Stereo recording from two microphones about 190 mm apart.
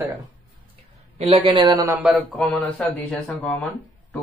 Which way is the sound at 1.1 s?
30° right (ahead or behind).